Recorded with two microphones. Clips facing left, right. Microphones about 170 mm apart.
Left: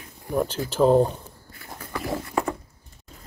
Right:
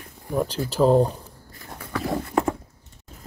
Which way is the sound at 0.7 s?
Centre (ahead or behind).